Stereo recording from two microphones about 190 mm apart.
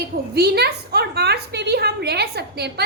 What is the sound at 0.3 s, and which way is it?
A woman's voice, 55° right (ahead or behind).